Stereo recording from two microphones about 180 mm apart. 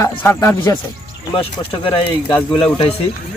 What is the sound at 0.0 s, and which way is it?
Speech, 15° left (ahead or behind).